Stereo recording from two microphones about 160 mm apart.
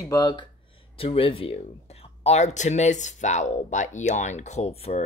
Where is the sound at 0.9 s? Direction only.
35° left (ahead or behind).